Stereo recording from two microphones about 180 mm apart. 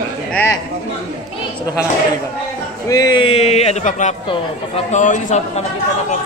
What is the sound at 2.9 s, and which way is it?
Speech, 20° left (ahead or behind).